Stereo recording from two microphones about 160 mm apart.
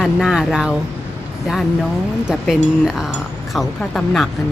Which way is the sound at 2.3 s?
5° right (ahead or behind).